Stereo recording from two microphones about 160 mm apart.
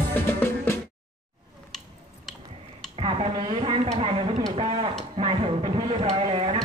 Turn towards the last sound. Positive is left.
turn(degrees=-40)  # may be behind; listen again after turning